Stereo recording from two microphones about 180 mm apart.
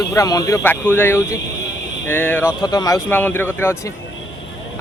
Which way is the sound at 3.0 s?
10° left (ahead or behind).